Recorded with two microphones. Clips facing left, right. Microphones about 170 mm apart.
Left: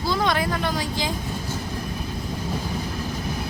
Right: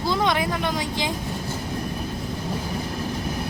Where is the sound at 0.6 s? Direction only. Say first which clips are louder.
Even; 20° right (ahead or behind).